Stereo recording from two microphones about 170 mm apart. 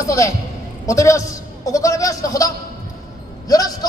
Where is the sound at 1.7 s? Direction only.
20° left (ahead or behind).